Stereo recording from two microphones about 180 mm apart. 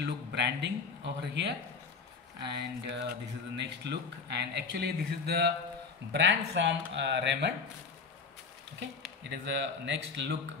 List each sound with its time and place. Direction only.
0.0 s speech: 70° right (ahead or behind)
6.1 s speech: 85° right
9.3 s speech: 80° right